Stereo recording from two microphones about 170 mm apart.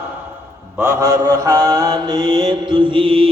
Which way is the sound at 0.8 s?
15° right (ahead or behind).